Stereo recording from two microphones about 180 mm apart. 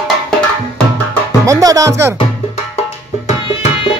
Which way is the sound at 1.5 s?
20° right (ahead or behind).